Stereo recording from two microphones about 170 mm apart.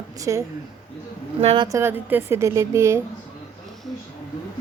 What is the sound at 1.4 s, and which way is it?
Speech, 35° right (ahead or behind).